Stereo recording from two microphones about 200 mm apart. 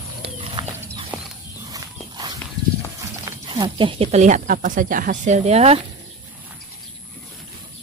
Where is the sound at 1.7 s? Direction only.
20° right (ahead or behind).